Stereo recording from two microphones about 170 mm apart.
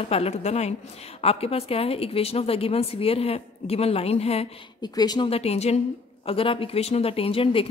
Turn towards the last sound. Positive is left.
turn(degrees=35)  # may be behind; listen again after turning